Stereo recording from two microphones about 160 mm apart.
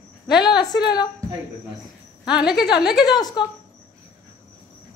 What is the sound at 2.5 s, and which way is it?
Speech, 25° left (ahead or behind).